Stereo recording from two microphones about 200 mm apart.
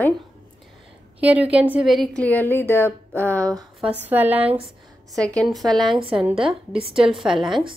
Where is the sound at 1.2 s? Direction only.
5° right (ahead or behind); by 3.4 s 10° left (ahead or behind).